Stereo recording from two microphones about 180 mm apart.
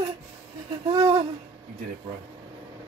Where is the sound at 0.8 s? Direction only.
25° right (ahead or behind).